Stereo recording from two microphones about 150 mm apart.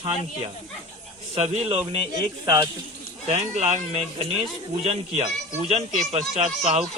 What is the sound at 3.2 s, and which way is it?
Speech, 45° right (ahead or behind).